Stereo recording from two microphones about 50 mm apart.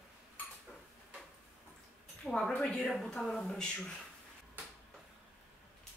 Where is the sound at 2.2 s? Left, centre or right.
Centre.